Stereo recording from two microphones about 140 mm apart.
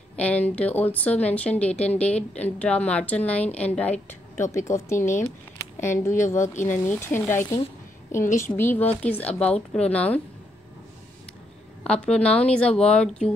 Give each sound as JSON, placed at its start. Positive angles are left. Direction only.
{"t": 0.1, "sound": "a woman's voice", "side_deg": 10}
{"t": 7.4, "sound": "a woman's voice", "side_deg": 35}
{"t": 8.2, "sound": "a woman's voice", "side_deg": 65}
{"t": 8.5, "sound": "a woman's voice", "side_deg": 15}
{"t": 11.8, "sound": "a woman's voice", "side_deg": 5}